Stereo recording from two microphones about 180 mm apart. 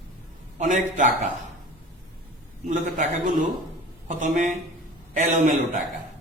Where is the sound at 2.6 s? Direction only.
45° right (ahead or behind).